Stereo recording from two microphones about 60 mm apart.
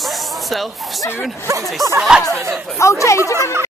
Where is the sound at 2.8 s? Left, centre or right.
Left.